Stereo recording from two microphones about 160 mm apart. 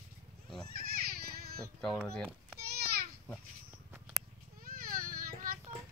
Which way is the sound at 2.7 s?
80° right.